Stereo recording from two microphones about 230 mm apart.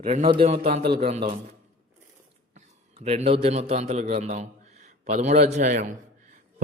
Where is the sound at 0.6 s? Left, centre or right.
Right.